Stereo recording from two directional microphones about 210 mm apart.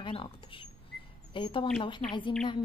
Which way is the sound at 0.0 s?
25° left (ahead or behind).